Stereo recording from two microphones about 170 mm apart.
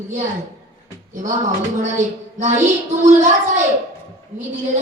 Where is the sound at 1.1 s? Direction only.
50° right (ahead or behind).